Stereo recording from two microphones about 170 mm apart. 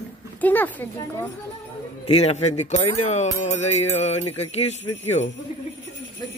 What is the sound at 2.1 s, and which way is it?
Speech, 35° left (ahead or behind).